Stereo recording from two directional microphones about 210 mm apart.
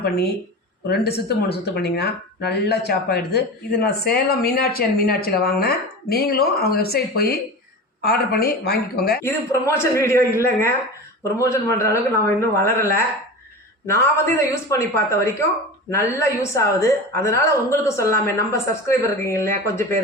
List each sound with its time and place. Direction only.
0.9 s speech: 50° left (ahead or behind)
9.2 s a woman's voice: 10° left (ahead or behind)